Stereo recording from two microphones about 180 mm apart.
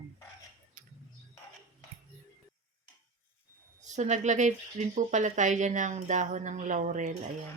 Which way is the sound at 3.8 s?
40° right (ahead or behind).